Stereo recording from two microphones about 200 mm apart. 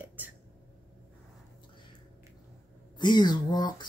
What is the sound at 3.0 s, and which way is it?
Speech, 20° left (ahead or behind).